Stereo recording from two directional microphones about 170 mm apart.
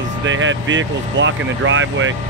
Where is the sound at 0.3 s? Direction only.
90° right.